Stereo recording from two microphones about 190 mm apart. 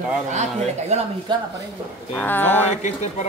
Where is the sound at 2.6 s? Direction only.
35° left (ahead or behind).